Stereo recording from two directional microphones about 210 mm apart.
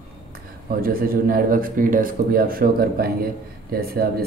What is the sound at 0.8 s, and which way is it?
Speech, 45° right (ahead or behind).